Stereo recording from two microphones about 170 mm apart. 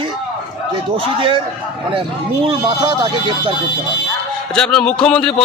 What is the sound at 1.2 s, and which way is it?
Speech, 30° right (ahead or behind).